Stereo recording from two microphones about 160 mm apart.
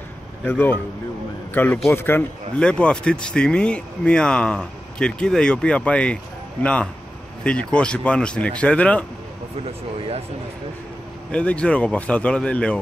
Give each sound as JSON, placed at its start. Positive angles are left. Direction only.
{"t": 0.5, "sound": "speech", "side_deg": 15}
{"t": 9.9, "sound": "speech", "side_deg": -35}
{"t": 11.3, "sound": "speech", "side_deg": 5}